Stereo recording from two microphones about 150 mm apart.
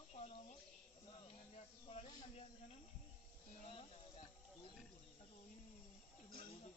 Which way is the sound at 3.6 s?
45° left (ahead or behind).